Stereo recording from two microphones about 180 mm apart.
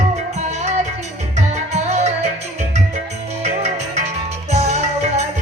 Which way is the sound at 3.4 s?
40° right (ahead or behind).